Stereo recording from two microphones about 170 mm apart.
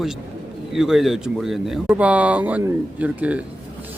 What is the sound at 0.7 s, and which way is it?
Speech, centre (ahead or behind).